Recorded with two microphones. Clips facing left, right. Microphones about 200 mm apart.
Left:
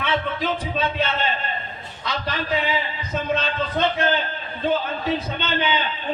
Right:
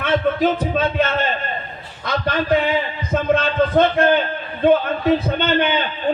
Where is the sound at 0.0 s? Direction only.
45° right (ahead or behind).